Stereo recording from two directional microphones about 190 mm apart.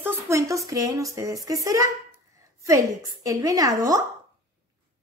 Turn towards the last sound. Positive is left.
turn(degrees=-20)  # may be behind; listen again after turning